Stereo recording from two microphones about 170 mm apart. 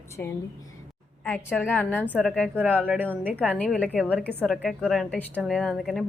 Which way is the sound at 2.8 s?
10° right (ahead or behind).